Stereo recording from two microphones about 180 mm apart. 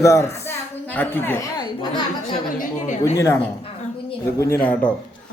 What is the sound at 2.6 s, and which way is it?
Speech, 40° left (ahead or behind).